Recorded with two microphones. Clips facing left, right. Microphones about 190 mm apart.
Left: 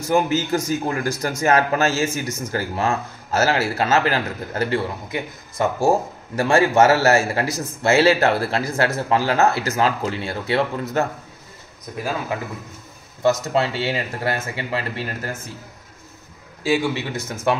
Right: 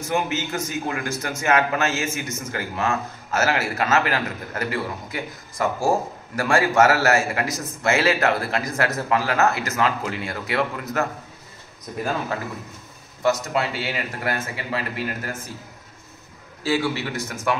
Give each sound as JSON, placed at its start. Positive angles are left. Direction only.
{"t": 0.1, "sound": "a man's voice", "side_deg": 35}
{"t": 13.2, "sound": "speech", "side_deg": 25}
{"t": 16.6, "sound": "speech", "side_deg": 15}